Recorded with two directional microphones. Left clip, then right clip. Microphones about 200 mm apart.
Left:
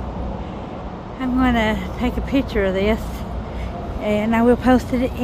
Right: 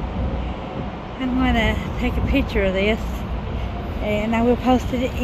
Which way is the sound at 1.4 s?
15° left (ahead or behind).